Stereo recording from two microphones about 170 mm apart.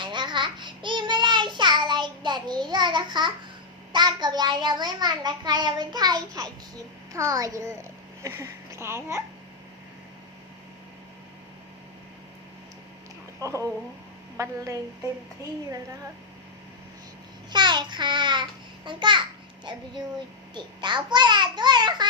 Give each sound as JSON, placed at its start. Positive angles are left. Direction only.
{"t": 0.0, "sound": "child singing", "side_deg": -25}
{"t": 3.9, "sound": "a child's voice", "side_deg": -25}
{"t": 13.4, "sound": "speech", "side_deg": -20}
{"t": 17.5, "sound": "a child's voice", "side_deg": -25}
{"t": 20.5, "sound": "a child's voice", "side_deg": -25}